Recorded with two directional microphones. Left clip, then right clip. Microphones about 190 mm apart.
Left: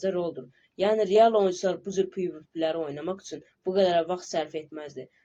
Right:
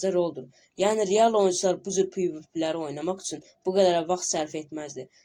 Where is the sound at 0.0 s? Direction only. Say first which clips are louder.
Right 3 dB; 30° right (ahead or behind).